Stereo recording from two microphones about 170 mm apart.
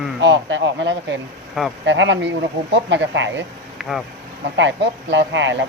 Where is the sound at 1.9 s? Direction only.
90° right.